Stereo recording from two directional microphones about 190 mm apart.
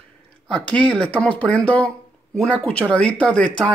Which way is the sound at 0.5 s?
5° left (ahead or behind).